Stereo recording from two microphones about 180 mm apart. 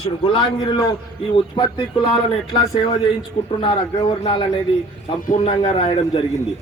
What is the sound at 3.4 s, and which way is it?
Speech, 45° left (ahead or behind).